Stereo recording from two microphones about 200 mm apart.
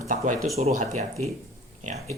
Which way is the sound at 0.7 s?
35° right (ahead or behind).